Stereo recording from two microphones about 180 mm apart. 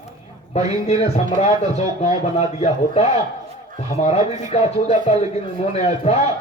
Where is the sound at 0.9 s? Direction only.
35° left (ahead or behind).